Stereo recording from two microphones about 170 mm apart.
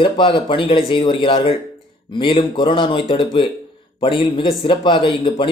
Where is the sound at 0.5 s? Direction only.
30° left (ahead or behind).